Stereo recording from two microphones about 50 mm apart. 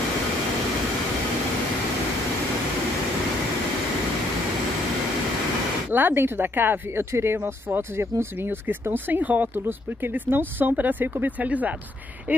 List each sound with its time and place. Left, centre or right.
5.9 s speech: right